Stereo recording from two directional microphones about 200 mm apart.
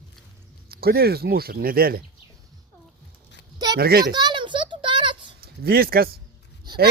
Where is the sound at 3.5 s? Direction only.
20° right (ahead or behind).